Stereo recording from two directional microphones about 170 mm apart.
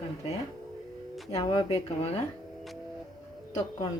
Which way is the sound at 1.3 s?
25° left (ahead or behind).